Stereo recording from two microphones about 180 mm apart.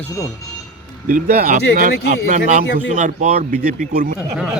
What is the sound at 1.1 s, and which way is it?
Speech, 45° right (ahead or behind).